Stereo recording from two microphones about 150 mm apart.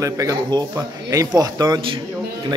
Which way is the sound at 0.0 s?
20° right (ahead or behind).